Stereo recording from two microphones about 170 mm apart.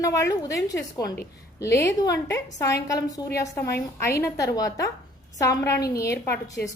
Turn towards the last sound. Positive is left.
turn(degrees=15)  # may be behind; listen again after turning